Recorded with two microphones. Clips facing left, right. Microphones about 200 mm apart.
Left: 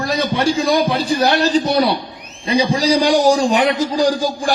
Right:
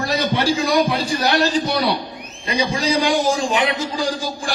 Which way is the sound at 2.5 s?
35° left (ahead or behind).